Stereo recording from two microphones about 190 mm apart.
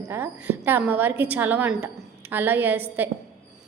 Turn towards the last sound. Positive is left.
turn(degrees=-10)  # may be behind; listen again after turning